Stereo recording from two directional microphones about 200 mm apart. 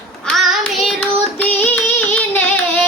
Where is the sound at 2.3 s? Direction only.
10° left (ahead or behind).